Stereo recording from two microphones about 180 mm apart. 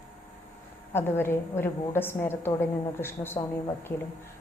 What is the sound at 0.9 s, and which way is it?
A woman's voice, 10° left (ahead or behind).